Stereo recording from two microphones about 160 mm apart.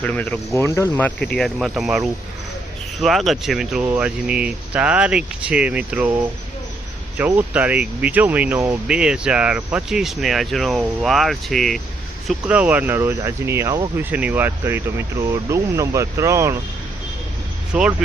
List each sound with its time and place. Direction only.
0.0 s speech: 10° left (ahead or behind); by 9.0 s 15° right (ahead or behind)
9.0 s speech: 5° right (ahead or behind)
12.3 s speech: 10° right (ahead or behind)
17.7 s speech: 5° right (ahead or behind)